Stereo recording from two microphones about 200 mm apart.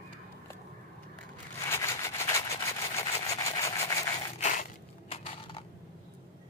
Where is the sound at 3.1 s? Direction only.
30° left (ahead or behind).